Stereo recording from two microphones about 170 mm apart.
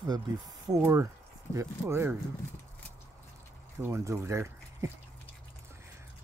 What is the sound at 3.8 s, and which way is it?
Speech, 15° right (ahead or behind).